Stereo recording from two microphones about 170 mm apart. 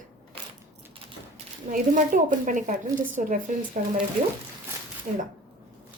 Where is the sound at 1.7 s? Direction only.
50° right (ahead or behind).